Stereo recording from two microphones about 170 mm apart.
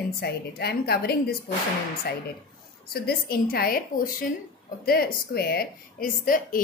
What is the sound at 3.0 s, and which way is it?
A woman's voice, 60° left (ahead or behind).